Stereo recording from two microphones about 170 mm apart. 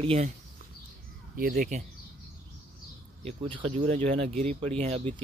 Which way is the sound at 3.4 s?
30° right (ahead or behind).